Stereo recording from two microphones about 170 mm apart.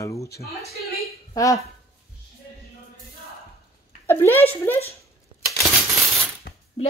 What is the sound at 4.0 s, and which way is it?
Speech, 15° left (ahead or behind).